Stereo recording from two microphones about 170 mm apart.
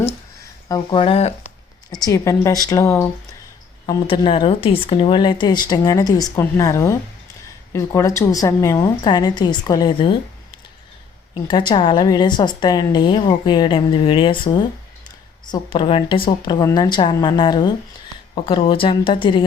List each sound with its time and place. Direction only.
0.7 s a woman's voice: 30° left (ahead or behind)
2.0 s a woman's voice: 20° left (ahead or behind)
4.0 s a woman's voice: 30° left (ahead or behind)
11.4 s a woman's voice: 25° left (ahead or behind)